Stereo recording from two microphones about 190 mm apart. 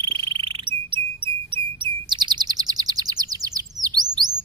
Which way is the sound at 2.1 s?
25° right (ahead or behind).